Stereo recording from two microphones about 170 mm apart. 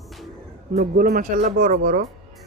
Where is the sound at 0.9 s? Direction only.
60° right (ahead or behind).